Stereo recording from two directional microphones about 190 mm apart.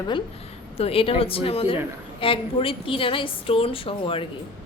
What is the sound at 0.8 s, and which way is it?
A woman's voice, 30° left (ahead or behind).